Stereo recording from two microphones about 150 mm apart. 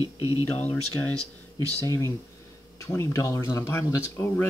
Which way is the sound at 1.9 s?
20° left (ahead or behind).